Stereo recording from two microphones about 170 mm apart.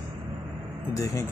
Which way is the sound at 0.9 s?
20° left (ahead or behind).